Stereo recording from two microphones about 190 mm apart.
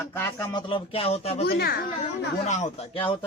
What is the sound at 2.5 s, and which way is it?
Speech, 40° left (ahead or behind).